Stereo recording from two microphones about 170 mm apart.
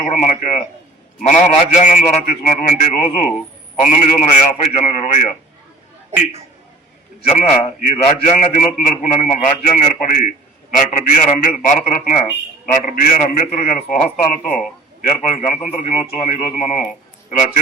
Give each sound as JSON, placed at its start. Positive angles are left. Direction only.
{"t": 0.0, "sound": "a man's voice", "side_deg": 45}
{"t": 7.3, "sound": "a man's voice", "side_deg": 40}